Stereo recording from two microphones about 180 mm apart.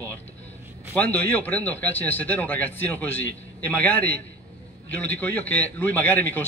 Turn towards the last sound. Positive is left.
turn(degrees=10)  # may be behind; listen again after turning